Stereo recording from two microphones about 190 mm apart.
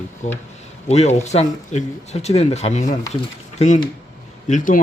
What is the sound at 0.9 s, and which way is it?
Speech, 35° left (ahead or behind).